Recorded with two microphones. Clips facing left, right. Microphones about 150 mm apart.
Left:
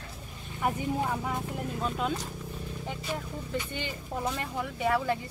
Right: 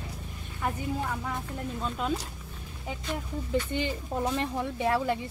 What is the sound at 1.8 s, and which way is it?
Speech, centre (ahead or behind).